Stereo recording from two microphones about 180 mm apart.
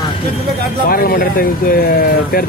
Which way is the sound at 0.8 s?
55° left (ahead or behind).